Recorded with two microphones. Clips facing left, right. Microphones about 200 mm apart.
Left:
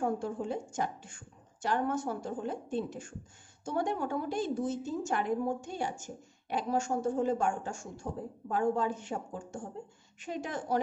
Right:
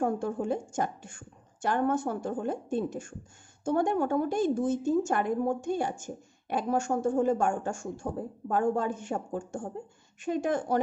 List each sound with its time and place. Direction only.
0.0 s a woman's voice: 50° right (ahead or behind)